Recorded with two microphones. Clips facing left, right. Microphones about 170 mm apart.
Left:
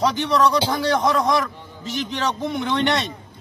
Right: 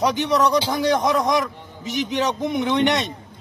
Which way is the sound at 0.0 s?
15° right (ahead or behind).